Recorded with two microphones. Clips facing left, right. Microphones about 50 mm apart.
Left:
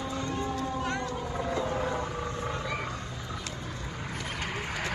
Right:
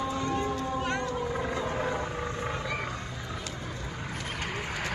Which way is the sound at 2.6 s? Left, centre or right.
Centre.